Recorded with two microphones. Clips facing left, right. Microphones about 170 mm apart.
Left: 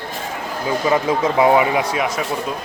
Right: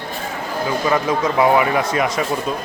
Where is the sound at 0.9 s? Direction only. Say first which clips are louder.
Left 2 dB; 25° left (ahead or behind).